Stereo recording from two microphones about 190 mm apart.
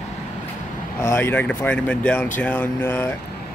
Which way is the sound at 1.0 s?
10° left (ahead or behind).